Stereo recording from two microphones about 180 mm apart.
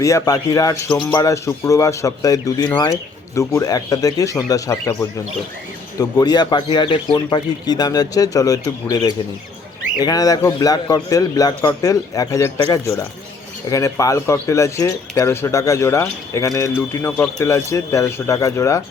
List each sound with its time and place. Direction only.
0.0 s speech: 20° left (ahead or behind)